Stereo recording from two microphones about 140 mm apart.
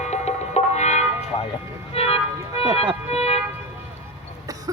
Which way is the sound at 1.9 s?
45° left (ahead or behind).